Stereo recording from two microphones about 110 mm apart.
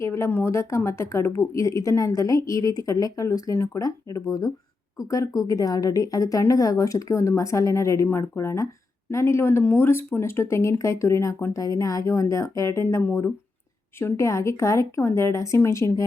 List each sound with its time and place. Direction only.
0.0 s a woman's voice: 25° left (ahead or behind)
14.0 s a woman's voice: 25° left (ahead or behind)